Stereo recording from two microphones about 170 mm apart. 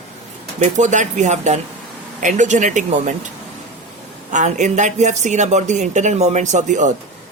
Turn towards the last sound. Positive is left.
turn(degrees=-45)  # may be behind; listen again after turning